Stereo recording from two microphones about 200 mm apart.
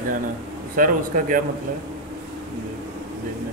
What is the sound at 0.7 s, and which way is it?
Speech, 45° right (ahead or behind).